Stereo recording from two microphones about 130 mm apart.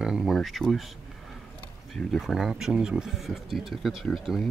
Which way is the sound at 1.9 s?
Centre (ahead or behind).